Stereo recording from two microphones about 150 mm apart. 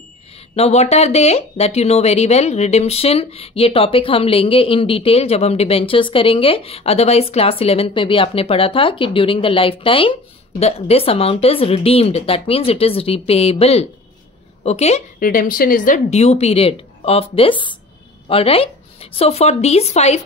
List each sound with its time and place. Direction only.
0.6 s speech: 45° left (ahead or behind)
15.1 s a woman's voice: 70° left (ahead or behind)
16.1 s speech: 45° left (ahead or behind)